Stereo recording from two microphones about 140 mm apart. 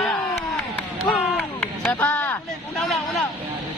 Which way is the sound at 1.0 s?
5° left (ahead or behind).